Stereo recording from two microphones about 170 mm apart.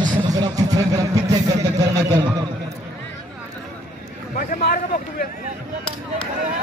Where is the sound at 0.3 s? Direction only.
20° right (ahead or behind).